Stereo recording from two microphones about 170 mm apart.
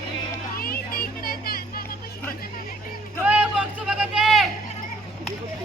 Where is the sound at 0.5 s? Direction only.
60° left (ahead or behind).